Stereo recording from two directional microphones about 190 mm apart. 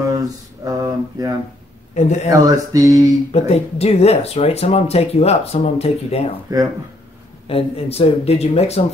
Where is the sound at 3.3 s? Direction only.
35° left (ahead or behind).